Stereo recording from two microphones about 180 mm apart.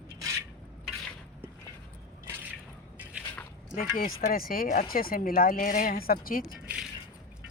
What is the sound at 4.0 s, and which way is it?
Speech, 55° left (ahead or behind).